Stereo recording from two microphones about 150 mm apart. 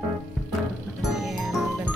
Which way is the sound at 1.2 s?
Centre (ahead or behind).